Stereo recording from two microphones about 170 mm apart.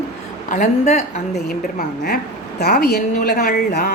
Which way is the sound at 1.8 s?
65° left (ahead or behind).